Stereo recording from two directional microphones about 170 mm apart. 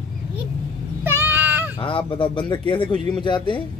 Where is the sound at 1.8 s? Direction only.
30° left (ahead or behind).